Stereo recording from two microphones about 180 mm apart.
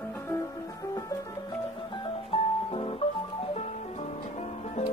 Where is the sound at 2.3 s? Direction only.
30° left (ahead or behind).